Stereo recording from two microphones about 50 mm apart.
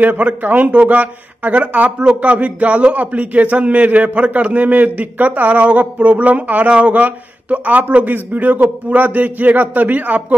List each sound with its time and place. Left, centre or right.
0.0 s a man's voice: right